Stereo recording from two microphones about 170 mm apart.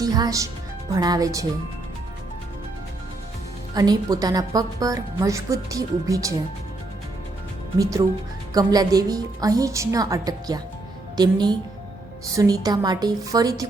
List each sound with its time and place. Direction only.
0.0 s speech: 20° right (ahead or behind)
3.8 s speech: 20° right (ahead or behind)
7.8 s speech: 20° right (ahead or behind)